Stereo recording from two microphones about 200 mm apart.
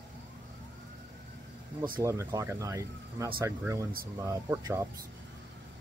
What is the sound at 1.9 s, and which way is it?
Speech, 15° right (ahead or behind).